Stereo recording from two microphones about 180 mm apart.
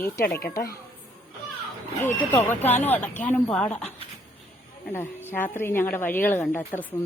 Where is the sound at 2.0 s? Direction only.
15° left (ahead or behind).